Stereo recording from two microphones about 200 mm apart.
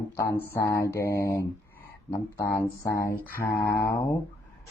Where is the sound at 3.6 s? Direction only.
15° left (ahead or behind).